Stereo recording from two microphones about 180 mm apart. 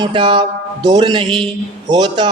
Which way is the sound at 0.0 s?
25° right (ahead or behind).